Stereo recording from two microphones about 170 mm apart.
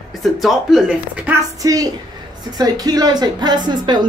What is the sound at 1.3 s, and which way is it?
A woman's voice, 20° right (ahead or behind).